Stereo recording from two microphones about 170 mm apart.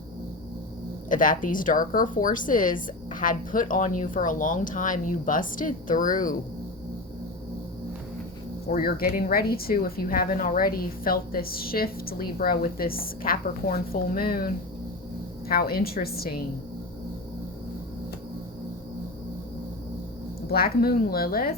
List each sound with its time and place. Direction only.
1.1 s speech: 50° left (ahead or behind)
8.6 s speech: 65° left (ahead or behind)
20.5 s speech: 65° left (ahead or behind)